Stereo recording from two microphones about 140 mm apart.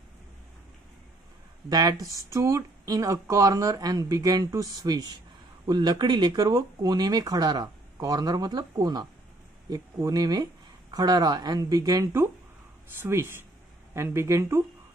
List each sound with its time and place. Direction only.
1.7 s speech: 30° right (ahead or behind)